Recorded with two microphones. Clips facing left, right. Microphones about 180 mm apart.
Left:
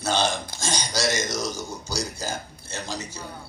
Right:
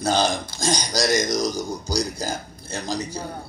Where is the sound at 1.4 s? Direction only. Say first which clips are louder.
Right 5 dB; 15° right (ahead or behind).